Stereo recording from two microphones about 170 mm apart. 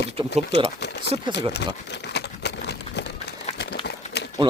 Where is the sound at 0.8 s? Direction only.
80° left.